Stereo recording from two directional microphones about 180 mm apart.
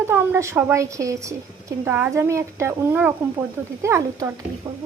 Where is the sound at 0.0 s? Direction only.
15° right (ahead or behind).